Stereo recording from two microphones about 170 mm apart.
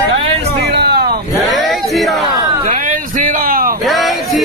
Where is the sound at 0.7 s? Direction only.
70° right (ahead or behind).